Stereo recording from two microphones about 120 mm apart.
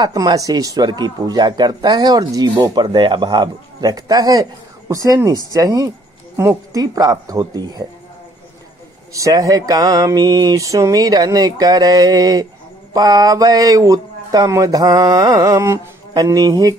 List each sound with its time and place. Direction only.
0.0 s speech: 30° right (ahead or behind)
9.1 s speech: 30° right (ahead or behind)